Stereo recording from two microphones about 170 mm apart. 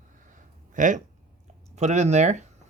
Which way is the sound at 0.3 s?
50° right (ahead or behind).